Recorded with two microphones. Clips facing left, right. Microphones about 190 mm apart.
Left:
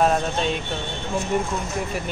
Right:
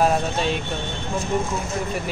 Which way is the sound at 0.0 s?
5° right (ahead or behind).